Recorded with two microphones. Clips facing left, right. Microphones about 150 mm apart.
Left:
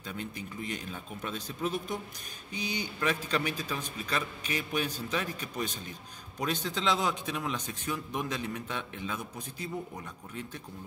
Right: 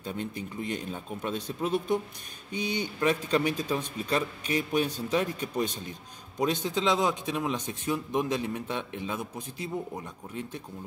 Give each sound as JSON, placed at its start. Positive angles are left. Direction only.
{"t": 0.0, "sound": "a man's voice", "side_deg": -25}